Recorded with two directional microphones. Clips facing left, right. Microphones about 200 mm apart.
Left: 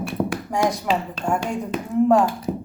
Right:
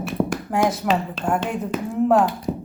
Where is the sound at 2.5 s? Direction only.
20° left (ahead or behind).